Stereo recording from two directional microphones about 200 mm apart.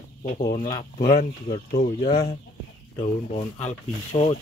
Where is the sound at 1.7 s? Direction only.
40° left (ahead or behind).